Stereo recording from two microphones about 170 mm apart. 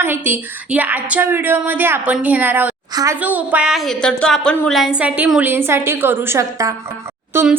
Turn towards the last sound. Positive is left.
turn(degrees=-10)  # may be behind; listen again after turning